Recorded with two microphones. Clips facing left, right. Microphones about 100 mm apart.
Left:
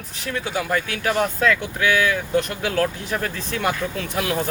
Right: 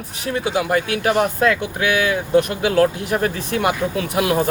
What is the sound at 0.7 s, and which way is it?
Speech, 45° right (ahead or behind).